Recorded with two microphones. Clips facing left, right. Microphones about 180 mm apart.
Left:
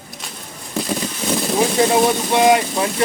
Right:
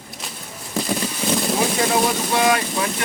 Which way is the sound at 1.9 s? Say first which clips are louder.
Left 4 dB; 20° left (ahead or behind).